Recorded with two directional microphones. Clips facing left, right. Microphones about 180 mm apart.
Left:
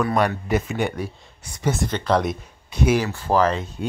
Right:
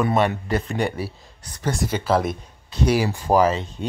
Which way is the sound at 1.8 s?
5° right (ahead or behind).